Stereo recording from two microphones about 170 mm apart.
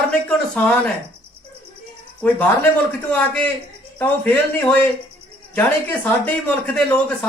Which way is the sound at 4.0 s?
10° left (ahead or behind).